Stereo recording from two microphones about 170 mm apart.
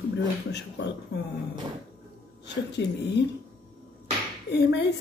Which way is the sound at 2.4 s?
90° left.